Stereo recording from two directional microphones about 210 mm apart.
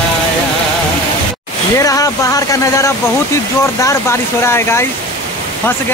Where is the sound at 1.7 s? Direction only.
15° left (ahead or behind).